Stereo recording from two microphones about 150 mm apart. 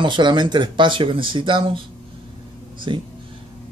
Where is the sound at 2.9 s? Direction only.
35° right (ahead or behind).